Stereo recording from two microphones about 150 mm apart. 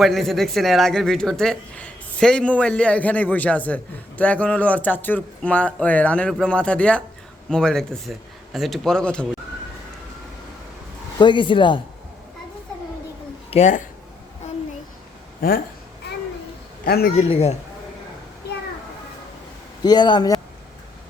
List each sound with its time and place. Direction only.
0.0 s speech: centre (ahead or behind)
11.2 s speech: 30° left (ahead or behind)
13.5 s speech: 50° left (ahead or behind)
15.4 s speech: 75° left (ahead or behind)
16.8 s a man's voice: 90° left
17.2 s speech: 45° left (ahead or behind)
19.8 s speech: 30° left (ahead or behind)